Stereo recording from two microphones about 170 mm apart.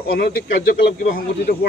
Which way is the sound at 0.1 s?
65° left (ahead or behind).